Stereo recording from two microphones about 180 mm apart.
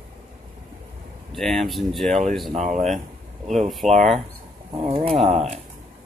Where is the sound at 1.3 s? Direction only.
Centre (ahead or behind).